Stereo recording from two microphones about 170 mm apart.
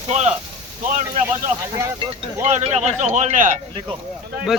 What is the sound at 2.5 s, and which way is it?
Speech, 40° right (ahead or behind).